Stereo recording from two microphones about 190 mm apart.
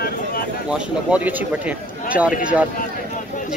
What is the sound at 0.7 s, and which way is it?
Speech, 5° right (ahead or behind).